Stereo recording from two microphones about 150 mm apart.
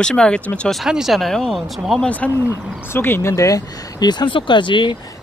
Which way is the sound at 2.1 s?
15° left (ahead or behind).